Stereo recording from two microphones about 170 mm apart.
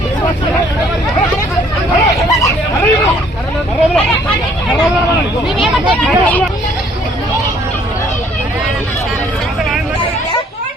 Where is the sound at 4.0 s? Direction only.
5° left (ahead or behind).